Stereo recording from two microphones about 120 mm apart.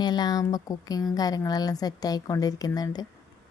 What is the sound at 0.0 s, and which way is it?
A woman's voice, 35° left (ahead or behind).